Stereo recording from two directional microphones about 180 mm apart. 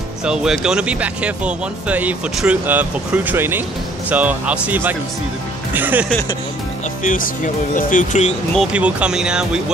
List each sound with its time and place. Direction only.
0.2 s speech: 5° right (ahead or behind)
7.0 s speech: 45° left (ahead or behind)
8.5 s speech: 5° right (ahead or behind)